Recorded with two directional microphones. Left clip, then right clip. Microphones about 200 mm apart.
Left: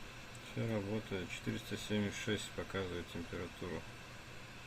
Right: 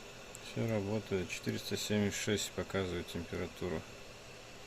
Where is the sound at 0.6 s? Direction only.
45° right (ahead or behind).